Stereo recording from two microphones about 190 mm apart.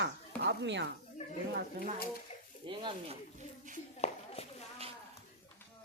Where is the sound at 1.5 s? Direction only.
55° right (ahead or behind).